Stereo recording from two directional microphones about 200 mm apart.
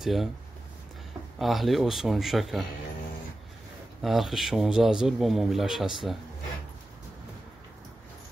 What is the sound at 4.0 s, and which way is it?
Speech, centre (ahead or behind).